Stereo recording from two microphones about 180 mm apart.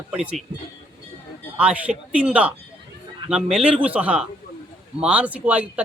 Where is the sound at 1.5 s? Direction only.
10° right (ahead or behind).